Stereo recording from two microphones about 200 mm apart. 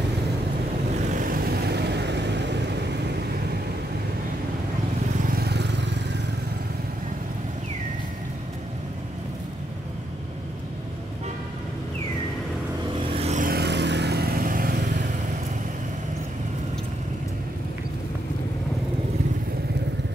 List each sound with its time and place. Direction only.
1.1 s vehicle: 45° right (ahead or behind)
5.2 s vehicle: 50° right (ahead or behind)
13.0 s vehicle: 35° right (ahead or behind)